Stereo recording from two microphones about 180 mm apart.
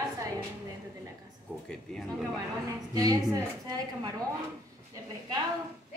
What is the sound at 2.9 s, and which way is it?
A woman's voice, 20° right (ahead or behind).